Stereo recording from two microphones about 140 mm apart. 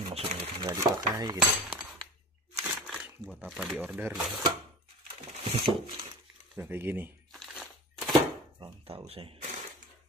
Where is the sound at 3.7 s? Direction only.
10° right (ahead or behind).